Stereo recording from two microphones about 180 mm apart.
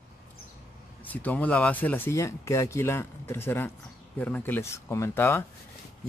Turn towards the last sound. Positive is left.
turn(degrees=15)  # may be behind; listen again after turning